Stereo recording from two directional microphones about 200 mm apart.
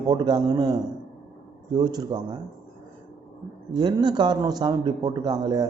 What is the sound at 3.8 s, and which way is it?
Speech, 20° right (ahead or behind).